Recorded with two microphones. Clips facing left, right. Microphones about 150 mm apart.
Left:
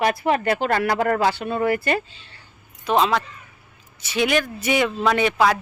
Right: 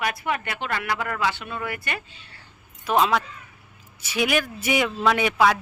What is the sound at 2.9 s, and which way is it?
A woman's voice, 5° right (ahead or behind).